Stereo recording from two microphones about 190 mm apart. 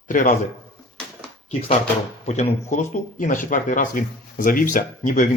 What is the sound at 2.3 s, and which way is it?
Speech, 40° left (ahead or behind).